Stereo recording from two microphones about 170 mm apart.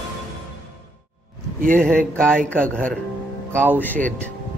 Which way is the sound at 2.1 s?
5° left (ahead or behind).